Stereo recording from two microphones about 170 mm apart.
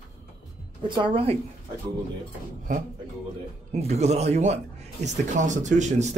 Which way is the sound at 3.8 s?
40° right (ahead or behind).